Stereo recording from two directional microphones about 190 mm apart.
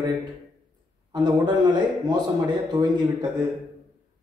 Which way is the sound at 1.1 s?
20° right (ahead or behind).